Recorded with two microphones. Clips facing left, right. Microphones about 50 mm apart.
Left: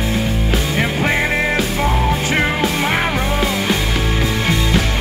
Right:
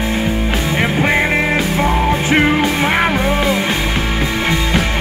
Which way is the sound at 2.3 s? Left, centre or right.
Centre.